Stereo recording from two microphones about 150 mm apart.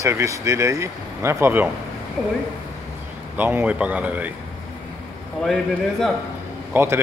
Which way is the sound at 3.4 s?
10° right (ahead or behind).